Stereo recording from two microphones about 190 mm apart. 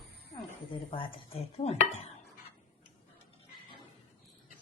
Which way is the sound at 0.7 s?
25° left (ahead or behind).